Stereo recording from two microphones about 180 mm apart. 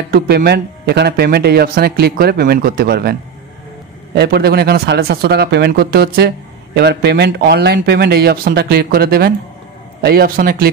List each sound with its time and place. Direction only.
0.1 s speech: 60° right (ahead or behind)